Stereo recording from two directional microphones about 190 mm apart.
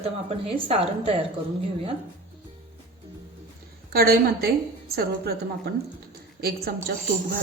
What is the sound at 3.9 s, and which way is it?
A woman's voice, 55° right (ahead or behind).